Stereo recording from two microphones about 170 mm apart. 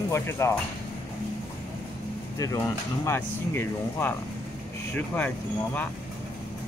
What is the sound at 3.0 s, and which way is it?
Speech, 15° left (ahead or behind).